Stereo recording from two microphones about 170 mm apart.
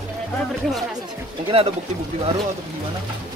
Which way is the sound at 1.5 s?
35° right (ahead or behind).